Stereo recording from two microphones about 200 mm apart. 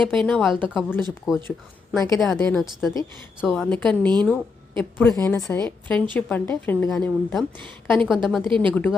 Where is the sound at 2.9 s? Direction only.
15° left (ahead or behind).